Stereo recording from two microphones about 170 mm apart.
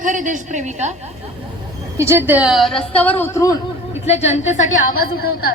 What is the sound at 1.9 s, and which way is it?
A woman's voice, 15° right (ahead or behind).